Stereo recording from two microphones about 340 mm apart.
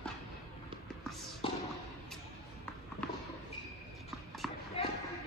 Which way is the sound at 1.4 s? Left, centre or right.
Centre.